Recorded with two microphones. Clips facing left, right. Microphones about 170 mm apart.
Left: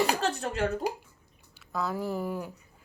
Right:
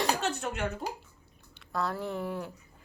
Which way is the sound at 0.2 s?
35° left (ahead or behind).